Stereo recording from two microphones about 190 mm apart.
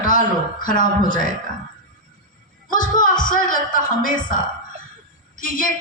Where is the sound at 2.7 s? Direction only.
45° left (ahead or behind).